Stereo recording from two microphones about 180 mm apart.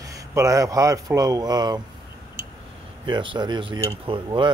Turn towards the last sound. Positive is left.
turn(degrees=-25)  # may be behind; listen again after turning